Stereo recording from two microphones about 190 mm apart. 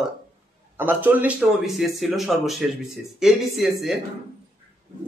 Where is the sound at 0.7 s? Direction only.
10° right (ahead or behind).